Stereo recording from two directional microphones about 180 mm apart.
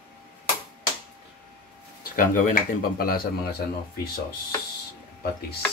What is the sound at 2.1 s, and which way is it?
Speech, 50° left (ahead or behind).